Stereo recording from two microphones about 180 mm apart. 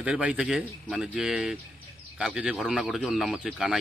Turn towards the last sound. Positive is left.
turn(degrees=-5)  # may be behind; listen again after turning